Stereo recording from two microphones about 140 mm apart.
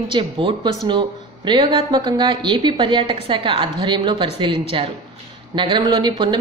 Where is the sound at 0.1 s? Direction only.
40° right (ahead or behind).